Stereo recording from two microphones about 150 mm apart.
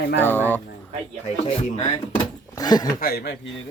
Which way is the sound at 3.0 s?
85° left.